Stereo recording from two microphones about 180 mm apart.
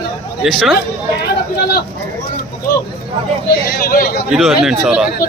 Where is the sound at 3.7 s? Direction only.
55° left (ahead or behind).